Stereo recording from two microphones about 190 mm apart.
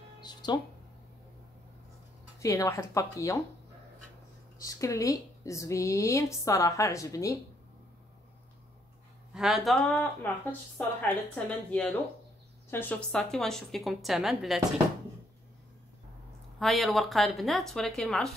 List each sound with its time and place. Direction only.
0.2 s music: 20° left (ahead or behind)
2.4 s a woman's voice: 15° left (ahead or behind)
4.6 s a woman's voice: 15° left (ahead or behind)
9.3 s a woman's voice: 5° right (ahead or behind)
16.5 s a woman's voice: centre (ahead or behind)